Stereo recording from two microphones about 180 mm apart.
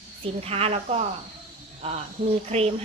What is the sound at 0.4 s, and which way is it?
Speech, 35° right (ahead or behind).